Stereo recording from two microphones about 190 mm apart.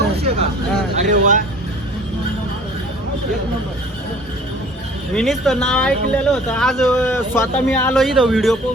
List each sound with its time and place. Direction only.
0.9 s speech: 45° right (ahead or behind)
5.1 s speech: centre (ahead or behind)
7.9 s speech: centre (ahead or behind)